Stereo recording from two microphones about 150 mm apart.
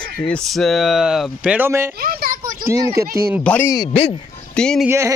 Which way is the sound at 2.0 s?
75° right (ahead or behind).